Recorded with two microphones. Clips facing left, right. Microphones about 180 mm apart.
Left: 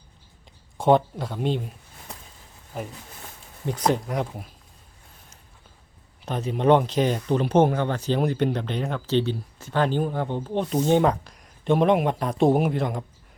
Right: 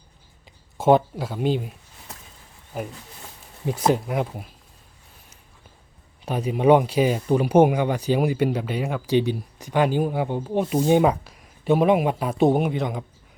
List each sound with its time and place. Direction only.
0.8 s speech: 5° right (ahead or behind)
2.7 s speech: 5° right (ahead or behind)
6.2 s speech: 10° right (ahead or behind)